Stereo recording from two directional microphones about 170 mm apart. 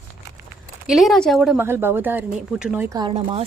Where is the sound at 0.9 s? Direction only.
Centre (ahead or behind).